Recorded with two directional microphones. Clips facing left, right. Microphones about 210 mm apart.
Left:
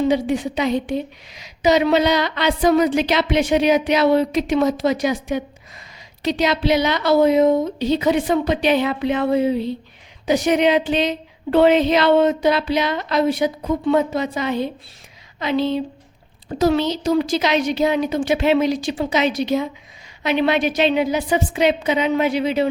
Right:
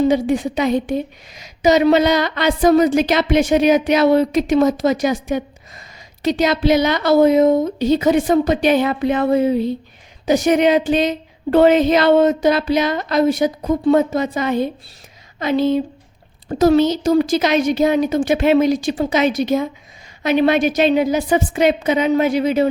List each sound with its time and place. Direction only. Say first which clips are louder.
0.1 s a woman's voice: right 2 dB; 50° right (ahead or behind)